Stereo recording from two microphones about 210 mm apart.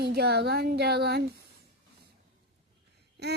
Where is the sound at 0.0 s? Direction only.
50° right (ahead or behind).